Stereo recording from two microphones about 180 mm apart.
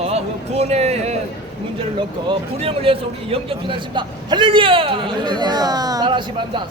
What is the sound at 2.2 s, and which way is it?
A man's voice, 30° right (ahead or behind).